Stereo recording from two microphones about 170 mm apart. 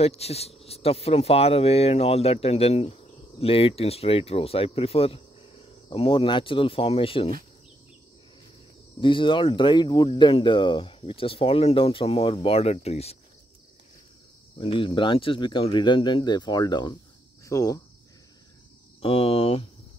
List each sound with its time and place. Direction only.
0.0 s speech: 35° left (ahead or behind)
9.0 s speech: 30° left (ahead or behind)
14.6 s speech: 30° left (ahead or behind)
18.9 s speech: 35° left (ahead or behind)